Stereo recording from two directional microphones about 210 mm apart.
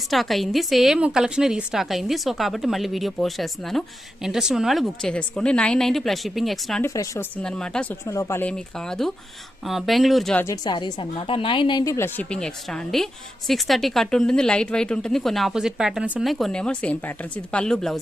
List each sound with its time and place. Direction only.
0.1 s a woman's voice: centre (ahead or behind)
6.8 s a woman's voice: 15° left (ahead or behind)
7.4 s a woman's voice: 5° left (ahead or behind)
8.0 s a woman's voice: 15° left (ahead or behind)
10.4 s a woman's voice: 20° left (ahead or behind); by 18.0 s centre (ahead or behind)